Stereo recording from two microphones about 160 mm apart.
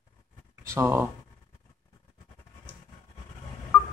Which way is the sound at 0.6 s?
15° right (ahead or behind).